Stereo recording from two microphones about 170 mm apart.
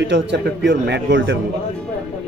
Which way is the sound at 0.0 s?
90° right.